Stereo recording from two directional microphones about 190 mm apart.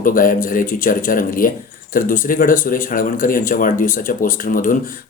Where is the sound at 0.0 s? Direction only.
45° left (ahead or behind).